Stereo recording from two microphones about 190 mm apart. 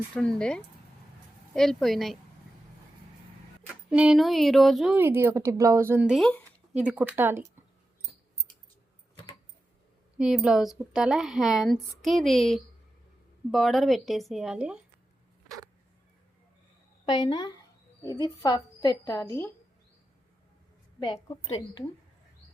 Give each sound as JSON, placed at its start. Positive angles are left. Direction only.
{"t": 0.2, "sound": "a woman's voice", "side_deg": 5}
{"t": 3.8, "sound": "a woman's voice", "side_deg": -5}
{"t": 10.2, "sound": "a woman's voice", "side_deg": -5}
{"t": 17.1, "sound": "a woman's voice", "side_deg": 25}
{"t": 21.0, "sound": "a woman's voice", "side_deg": 25}